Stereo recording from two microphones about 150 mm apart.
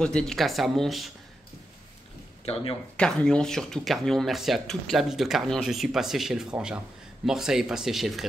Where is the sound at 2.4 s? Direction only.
40° left (ahead or behind).